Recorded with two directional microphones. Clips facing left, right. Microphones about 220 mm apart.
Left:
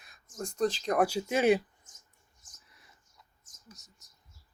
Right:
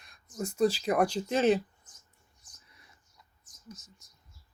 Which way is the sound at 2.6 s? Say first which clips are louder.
Right 1 dB; centre (ahead or behind).